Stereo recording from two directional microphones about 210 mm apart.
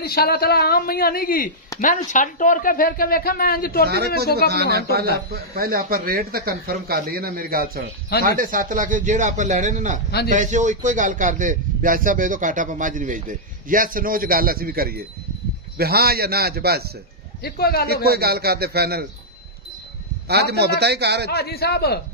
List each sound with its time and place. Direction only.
0.0 s a woman's voice: 45° left (ahead or behind)
4.5 s a man's voice: 50° right (ahead or behind)
17.4 s a woman's voice: 50° left (ahead or behind)
18.0 s speech: 50° right (ahead or behind)
20.2 s speech: 50° right (ahead or behind)
21.3 s a woman's voice: 50° left (ahead or behind)